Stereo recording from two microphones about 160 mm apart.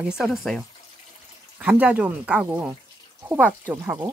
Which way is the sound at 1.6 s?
10° right (ahead or behind).